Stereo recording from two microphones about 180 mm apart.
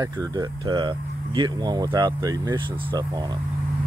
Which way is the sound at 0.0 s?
20° right (ahead or behind).